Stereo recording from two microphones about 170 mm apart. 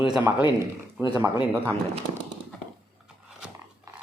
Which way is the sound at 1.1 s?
20° right (ahead or behind).